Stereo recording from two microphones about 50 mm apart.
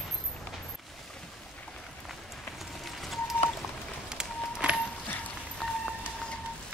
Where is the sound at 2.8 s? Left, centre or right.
Centre.